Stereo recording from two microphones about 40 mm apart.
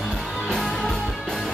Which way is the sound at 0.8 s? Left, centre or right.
Centre.